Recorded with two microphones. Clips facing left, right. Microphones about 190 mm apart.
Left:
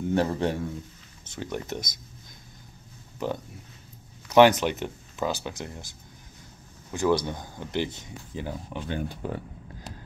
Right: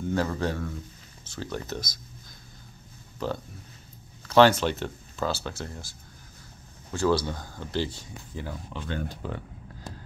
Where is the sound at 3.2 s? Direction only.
15° left (ahead or behind).